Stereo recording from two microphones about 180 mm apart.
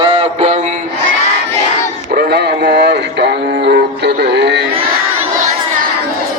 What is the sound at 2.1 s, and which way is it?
Music, 65° right (ahead or behind).